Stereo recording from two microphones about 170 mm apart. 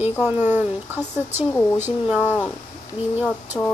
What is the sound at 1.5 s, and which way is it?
Speech, 15° left (ahead or behind).